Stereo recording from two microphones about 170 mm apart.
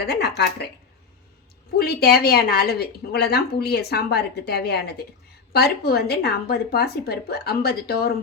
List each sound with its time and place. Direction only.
0.0 s a woman's voice: 75° left (ahead or behind)
1.7 s a woman's voice: 65° left (ahead or behind)